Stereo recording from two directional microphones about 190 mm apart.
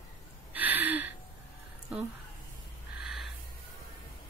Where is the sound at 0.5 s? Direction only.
10° right (ahead or behind).